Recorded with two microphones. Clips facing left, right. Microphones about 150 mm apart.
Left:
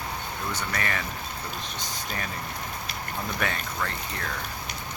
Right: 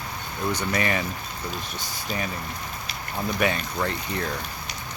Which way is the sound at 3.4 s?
20° right (ahead or behind).